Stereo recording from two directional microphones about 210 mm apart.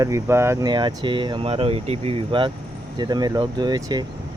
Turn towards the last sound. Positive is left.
turn(degrees=-20)  # may be behind; listen again after turning